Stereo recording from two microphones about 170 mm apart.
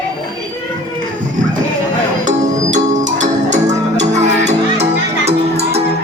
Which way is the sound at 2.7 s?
45° right (ahead or behind).